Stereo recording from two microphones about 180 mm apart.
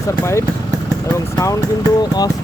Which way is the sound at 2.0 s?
20° left (ahead or behind).